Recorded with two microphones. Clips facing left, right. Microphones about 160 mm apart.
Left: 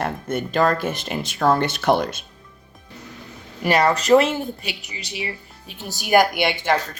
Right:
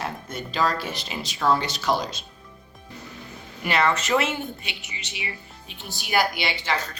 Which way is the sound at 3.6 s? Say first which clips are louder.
Left 5 dB; 40° left (ahead or behind).